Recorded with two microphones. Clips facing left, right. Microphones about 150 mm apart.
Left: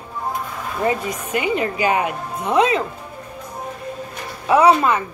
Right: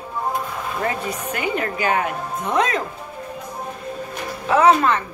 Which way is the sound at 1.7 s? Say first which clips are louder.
Left 2 dB; 10° left (ahead or behind).